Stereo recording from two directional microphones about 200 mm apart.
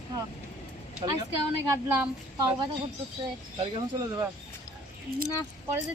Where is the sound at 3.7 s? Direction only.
20° right (ahead or behind).